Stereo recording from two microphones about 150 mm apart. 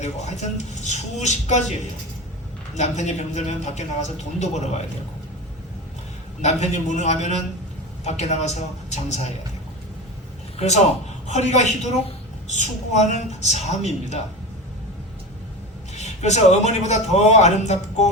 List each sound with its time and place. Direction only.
0.0 s speech: 50° left (ahead or behind)
2.7 s speech: 50° left (ahead or behind)
6.4 s speech: 50° left (ahead or behind)
11.3 s speech: 50° left (ahead or behind)
16.0 s speech: 50° left (ahead or behind)